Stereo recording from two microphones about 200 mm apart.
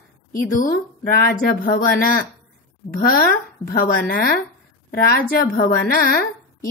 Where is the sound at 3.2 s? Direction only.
50° left (ahead or behind).